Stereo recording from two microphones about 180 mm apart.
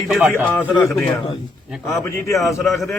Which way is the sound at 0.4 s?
10° left (ahead or behind).